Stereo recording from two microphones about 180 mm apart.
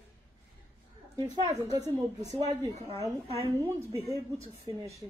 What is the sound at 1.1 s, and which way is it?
Speech, 20° right (ahead or behind).